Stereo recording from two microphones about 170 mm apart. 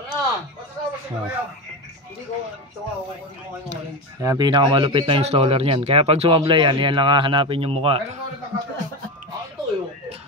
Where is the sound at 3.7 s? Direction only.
20° right (ahead or behind).